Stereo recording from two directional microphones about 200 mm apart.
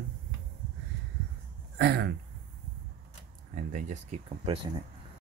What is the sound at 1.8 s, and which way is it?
Speech, 60° right (ahead or behind).